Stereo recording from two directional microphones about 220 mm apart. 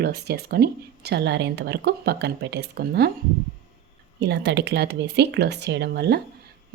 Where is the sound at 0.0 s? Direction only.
45° right (ahead or behind).